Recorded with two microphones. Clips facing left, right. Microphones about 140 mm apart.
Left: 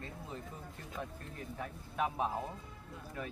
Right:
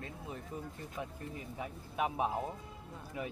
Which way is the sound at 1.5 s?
15° right (ahead or behind).